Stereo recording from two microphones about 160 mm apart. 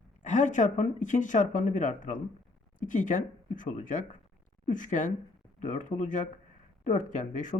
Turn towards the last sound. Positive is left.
turn(degrees=50)  # may be behind; listen again after turning